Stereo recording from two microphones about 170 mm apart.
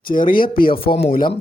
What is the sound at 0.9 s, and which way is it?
Speech, 35° left (ahead or behind).